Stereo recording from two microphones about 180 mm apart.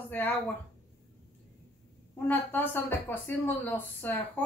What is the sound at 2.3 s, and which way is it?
Speech, 10° left (ahead or behind).